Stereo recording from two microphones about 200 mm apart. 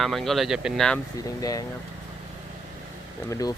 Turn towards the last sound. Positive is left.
turn(degrees=20)  # may be behind; listen again after turning